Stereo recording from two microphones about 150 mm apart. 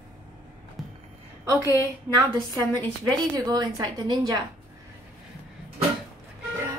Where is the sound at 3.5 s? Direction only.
25° right (ahead or behind).